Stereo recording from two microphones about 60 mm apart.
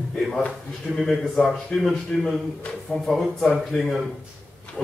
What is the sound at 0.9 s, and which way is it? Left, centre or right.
Speech, centre.